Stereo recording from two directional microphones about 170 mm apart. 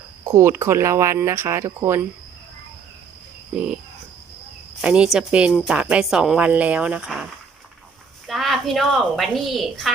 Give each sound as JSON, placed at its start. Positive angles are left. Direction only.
{"t": 0.3, "sound": "a woman's voice", "side_deg": -15}
{"t": 3.5, "sound": "a woman's voice", "side_deg": -5}
{"t": 4.8, "sound": "a woman's voice", "side_deg": -5}
{"t": 8.3, "sound": "a woman's voice", "side_deg": 0}